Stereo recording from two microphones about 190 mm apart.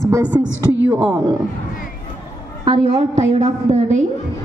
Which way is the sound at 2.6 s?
35° right (ahead or behind).